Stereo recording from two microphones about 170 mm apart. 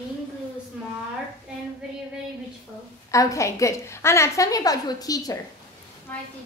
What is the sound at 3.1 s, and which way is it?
A woman's voice, 20° left (ahead or behind).